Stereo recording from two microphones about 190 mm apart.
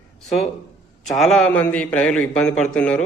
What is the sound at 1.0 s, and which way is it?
A man's voice, centre (ahead or behind).